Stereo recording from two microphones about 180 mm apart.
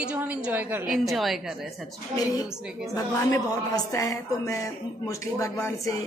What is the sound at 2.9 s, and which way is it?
Speech, 20° left (ahead or behind).